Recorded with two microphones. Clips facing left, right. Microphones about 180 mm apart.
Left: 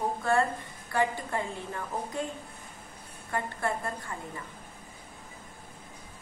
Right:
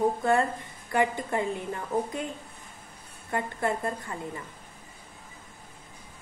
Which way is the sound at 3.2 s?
20° right (ahead or behind).